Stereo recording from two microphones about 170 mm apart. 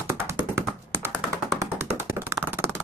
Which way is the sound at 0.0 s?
15° right (ahead or behind).